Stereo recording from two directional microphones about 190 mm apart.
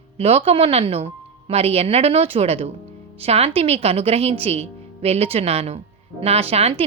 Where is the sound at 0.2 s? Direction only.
35° right (ahead or behind).